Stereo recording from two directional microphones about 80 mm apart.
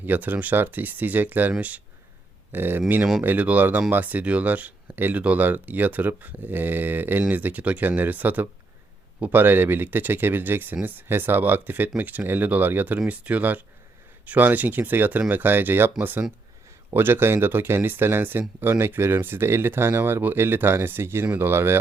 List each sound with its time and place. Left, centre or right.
0.0 s speech: right